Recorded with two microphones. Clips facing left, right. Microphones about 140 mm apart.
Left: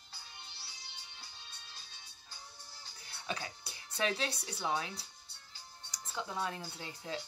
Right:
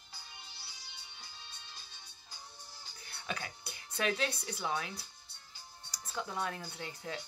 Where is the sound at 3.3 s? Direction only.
30° left (ahead or behind).